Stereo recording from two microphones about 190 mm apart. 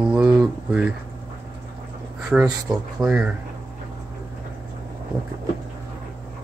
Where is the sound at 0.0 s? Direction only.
5° right (ahead or behind).